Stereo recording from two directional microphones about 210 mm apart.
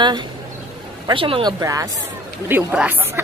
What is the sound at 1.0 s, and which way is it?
Speech, 25° right (ahead or behind).